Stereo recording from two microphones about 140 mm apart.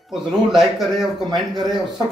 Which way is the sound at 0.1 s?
Centre (ahead or behind).